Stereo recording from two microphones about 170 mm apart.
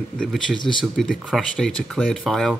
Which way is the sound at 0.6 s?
30° left (ahead or behind).